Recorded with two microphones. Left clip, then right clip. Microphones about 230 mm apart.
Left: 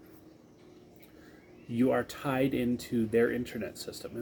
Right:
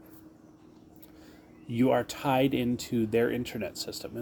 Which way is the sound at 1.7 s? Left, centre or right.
Right.